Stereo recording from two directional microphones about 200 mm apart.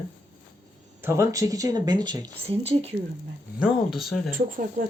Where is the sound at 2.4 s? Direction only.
30° right (ahead or behind).